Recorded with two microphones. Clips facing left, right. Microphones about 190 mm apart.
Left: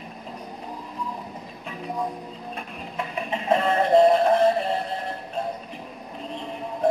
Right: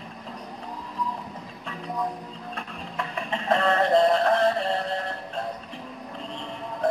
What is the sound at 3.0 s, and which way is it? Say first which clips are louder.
Synthetic singing: left 2 dB; 10° left (ahead or behind).